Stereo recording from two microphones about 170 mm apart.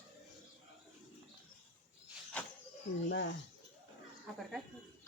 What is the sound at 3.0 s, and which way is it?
Speech, 90° left.